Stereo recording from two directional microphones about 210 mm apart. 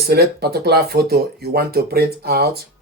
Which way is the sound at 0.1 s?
50° right (ahead or behind).